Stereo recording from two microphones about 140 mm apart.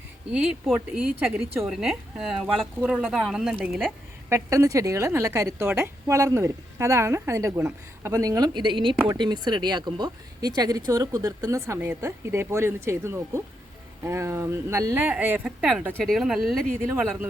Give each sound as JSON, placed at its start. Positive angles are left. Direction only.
{"t": 0.3, "sound": "speech", "side_deg": -5}
{"t": 4.3, "sound": "a woman's voice", "side_deg": -20}
{"t": 14.9, "sound": "speech", "side_deg": -15}
{"t": 15.4, "sound": "speech", "side_deg": 0}